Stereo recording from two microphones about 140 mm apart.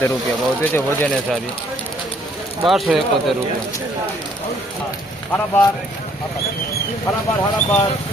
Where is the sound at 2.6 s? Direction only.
Centre (ahead or behind).